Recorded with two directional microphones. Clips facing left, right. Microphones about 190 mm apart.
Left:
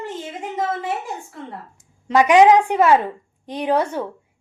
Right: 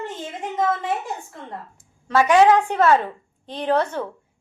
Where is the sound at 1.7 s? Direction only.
15° left (ahead or behind).